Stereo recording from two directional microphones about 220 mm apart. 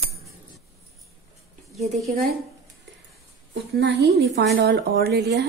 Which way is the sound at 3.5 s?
50° right (ahead or behind).